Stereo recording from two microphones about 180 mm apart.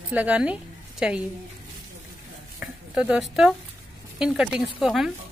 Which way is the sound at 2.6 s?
5° right (ahead or behind).